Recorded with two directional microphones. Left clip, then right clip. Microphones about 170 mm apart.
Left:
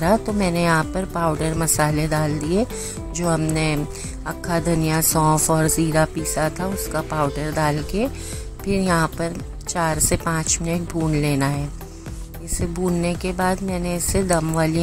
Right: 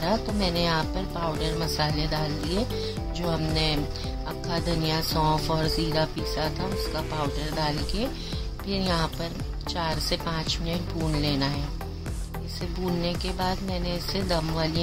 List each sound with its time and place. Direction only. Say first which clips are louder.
0.0 s speech: left 7 dB; 45° left (ahead or behind)
8.7 s speech: left 7 dB; 45° left (ahead or behind)
13.0 s speech: left 6 dB; 45° left (ahead or behind)